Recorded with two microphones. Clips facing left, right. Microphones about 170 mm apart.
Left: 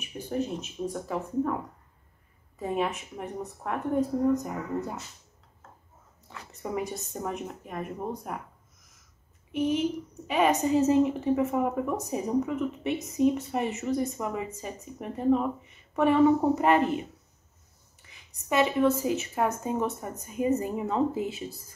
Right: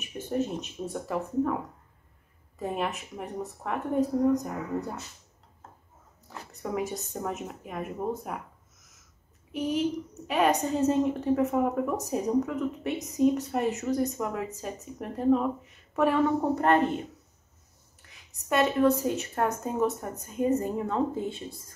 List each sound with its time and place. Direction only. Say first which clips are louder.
0.0 s a woman's voice: right 1 dB; centre (ahead or behind)
2.6 s a woman's voice: left 2 dB; centre (ahead or behind)
6.5 s a woman's voice: right 1 dB; centre (ahead or behind)
9.5 s a woman's voice: left 1 dB; centre (ahead or behind)
18.0 s a woman's voice: even; centre (ahead or behind)